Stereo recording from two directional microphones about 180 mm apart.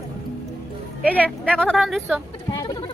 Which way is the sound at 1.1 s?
5° left (ahead or behind).